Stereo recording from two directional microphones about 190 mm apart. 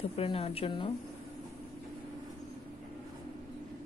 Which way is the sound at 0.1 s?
30° left (ahead or behind).